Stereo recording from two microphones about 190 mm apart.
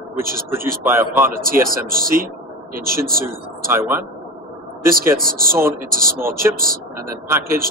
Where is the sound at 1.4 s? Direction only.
50° right (ahead or behind).